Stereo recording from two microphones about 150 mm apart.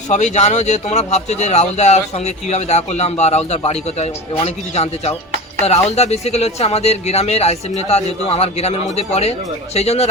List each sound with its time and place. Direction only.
0.1 s speech: 50° left (ahead or behind)